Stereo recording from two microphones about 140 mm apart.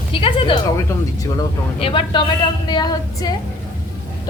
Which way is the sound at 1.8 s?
35° left (ahead or behind).